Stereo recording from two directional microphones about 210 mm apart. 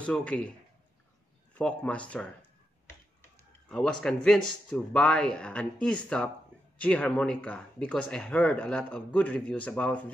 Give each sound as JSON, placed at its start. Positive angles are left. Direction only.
{"t": 0.0, "sound": "speech", "side_deg": 5}
{"t": 1.5, "sound": "speech", "side_deg": 5}
{"t": 3.3, "sound": "typing", "side_deg": 5}
{"t": 4.0, "sound": "speech", "side_deg": 5}